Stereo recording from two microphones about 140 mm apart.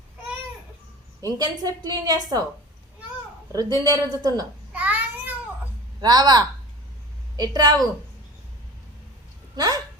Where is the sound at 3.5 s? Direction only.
25° right (ahead or behind).